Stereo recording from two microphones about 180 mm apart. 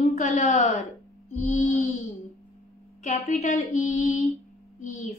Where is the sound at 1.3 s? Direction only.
40° left (ahead or behind).